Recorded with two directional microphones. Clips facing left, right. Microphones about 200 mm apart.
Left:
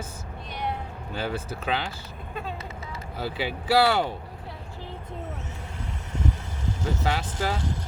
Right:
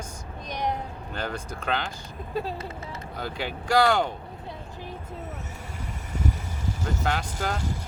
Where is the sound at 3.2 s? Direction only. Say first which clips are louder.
Left 3 dB; 5° left (ahead or behind).